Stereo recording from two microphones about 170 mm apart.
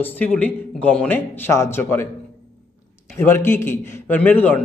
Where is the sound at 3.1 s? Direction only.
15° left (ahead or behind).